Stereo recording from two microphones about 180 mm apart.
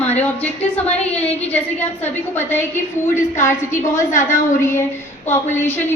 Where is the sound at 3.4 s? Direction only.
15° left (ahead or behind).